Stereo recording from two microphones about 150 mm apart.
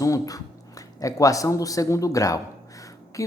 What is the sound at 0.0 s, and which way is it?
Speech, 25° left (ahead or behind).